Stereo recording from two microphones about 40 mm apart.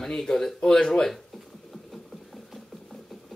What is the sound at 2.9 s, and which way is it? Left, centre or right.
Music, centre.